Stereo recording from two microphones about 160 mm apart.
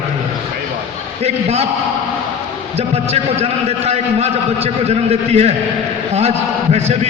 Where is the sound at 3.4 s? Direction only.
40° right (ahead or behind).